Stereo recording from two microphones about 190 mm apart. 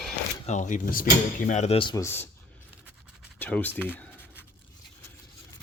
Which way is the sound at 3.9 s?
10° left (ahead or behind).